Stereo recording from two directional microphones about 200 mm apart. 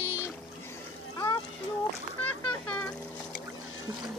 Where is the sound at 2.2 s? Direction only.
5° left (ahead or behind).